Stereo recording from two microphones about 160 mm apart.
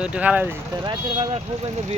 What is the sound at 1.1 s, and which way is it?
Speech, 40° right (ahead or behind).